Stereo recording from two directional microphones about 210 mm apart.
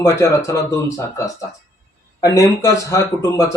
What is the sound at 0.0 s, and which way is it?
Speech, 15° left (ahead or behind).